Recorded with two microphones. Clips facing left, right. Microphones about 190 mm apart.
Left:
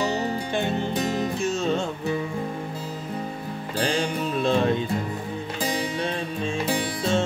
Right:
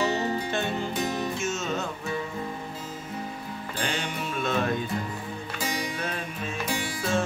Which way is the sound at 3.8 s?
35° left (ahead or behind).